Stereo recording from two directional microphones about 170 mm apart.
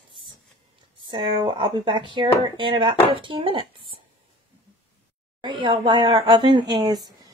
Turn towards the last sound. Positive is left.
turn(degrees=-20)  # may be behind; listen again after turning